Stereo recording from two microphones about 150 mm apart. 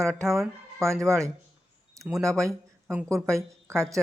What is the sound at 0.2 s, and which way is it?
Speech, 20° right (ahead or behind).